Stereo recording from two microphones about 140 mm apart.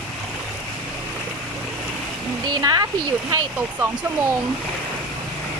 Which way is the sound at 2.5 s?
25° right (ahead or behind).